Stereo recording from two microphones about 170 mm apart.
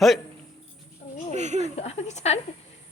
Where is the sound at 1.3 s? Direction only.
45° right (ahead or behind).